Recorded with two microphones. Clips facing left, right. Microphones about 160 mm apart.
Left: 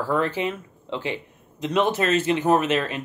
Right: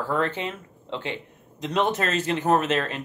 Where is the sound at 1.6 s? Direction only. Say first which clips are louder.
Left 2 dB; 5° left (ahead or behind).